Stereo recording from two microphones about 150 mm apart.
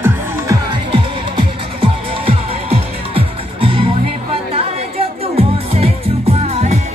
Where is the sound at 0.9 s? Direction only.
35° right (ahead or behind).